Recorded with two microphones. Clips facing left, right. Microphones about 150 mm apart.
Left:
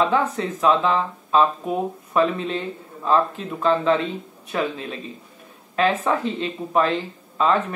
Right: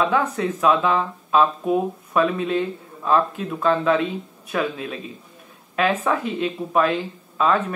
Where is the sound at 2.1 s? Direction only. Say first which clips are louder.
Even; 25° left (ahead or behind).